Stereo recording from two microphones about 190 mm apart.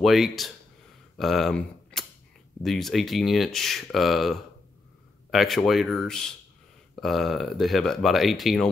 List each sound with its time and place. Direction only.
0.0 s speech: centre (ahead or behind)